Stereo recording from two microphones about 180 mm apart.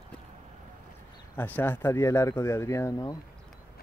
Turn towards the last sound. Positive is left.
turn(degrees=20)  # may be behind; listen again after turning